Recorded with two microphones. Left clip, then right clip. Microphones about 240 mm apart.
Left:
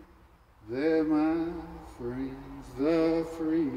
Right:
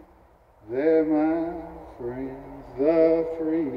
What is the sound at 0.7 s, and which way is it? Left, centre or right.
Speech, left.